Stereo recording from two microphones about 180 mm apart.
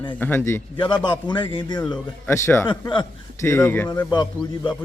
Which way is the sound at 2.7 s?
25° left (ahead or behind).